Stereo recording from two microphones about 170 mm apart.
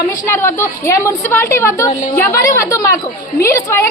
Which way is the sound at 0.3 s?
15° left (ahead or behind).